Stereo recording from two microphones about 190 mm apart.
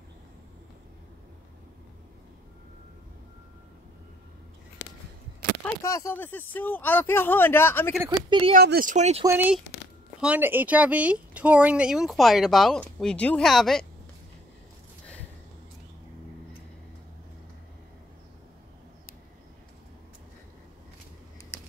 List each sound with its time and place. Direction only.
4.8 s a sound: 65° left (ahead or behind)
5.8 s speech: 15° left (ahead or behind)
8.3 s speech: 30° right (ahead or behind)
8.5 s speech: 50° right (ahead or behind)
9.2 s speech: 10° right (ahead or behind)